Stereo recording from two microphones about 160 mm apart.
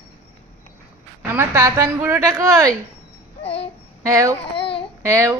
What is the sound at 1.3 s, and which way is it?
A woman's voice, 15° right (ahead or behind).